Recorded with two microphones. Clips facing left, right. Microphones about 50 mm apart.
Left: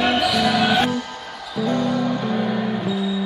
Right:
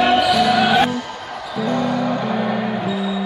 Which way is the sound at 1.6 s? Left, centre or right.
Right.